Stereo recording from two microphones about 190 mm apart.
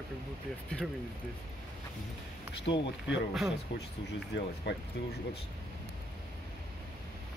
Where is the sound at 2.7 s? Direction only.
50° left (ahead or behind).